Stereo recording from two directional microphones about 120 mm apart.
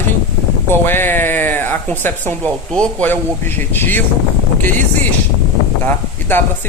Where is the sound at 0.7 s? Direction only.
20° left (ahead or behind).